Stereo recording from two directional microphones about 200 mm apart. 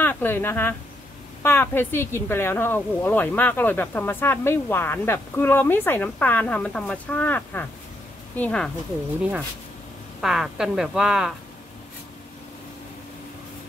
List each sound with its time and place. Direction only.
0.0 s a woman's voice: 10° left (ahead or behind)
10.2 s speech: 5° right (ahead or behind)